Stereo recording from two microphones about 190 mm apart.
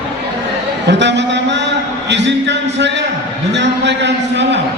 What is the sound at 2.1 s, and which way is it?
Music, 65° right (ahead or behind).